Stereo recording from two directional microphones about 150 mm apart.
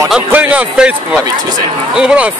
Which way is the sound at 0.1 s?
10° right (ahead or behind).